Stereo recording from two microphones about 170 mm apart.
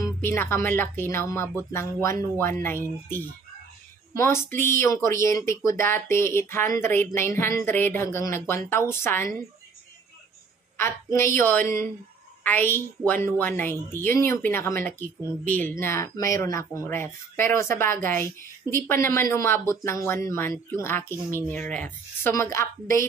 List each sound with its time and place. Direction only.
0.0 s speech: 15° left (ahead or behind)
10.8 s speech: 15° left (ahead or behind)